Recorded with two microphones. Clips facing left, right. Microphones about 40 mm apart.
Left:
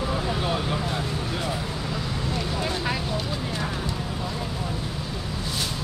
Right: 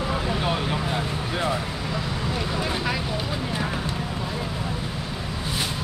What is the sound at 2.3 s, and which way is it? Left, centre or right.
Vehicle, centre.